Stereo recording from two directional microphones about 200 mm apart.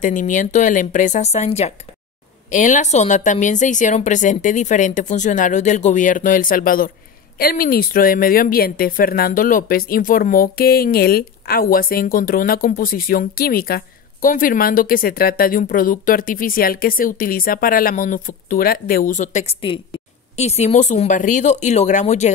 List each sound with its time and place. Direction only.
0.0 s a woman's voice: 40° left (ahead or behind)